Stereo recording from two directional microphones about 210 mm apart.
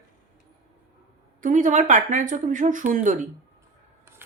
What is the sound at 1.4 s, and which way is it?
Speech, 40° right (ahead or behind).